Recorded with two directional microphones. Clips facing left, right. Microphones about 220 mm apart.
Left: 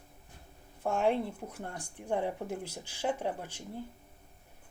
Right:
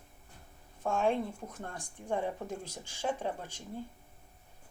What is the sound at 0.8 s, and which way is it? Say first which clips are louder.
Speech: left 1 dB; 15° left (ahead or behind).